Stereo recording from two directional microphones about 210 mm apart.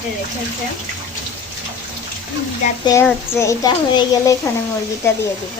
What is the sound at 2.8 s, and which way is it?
A child's voice, 15° left (ahead or behind).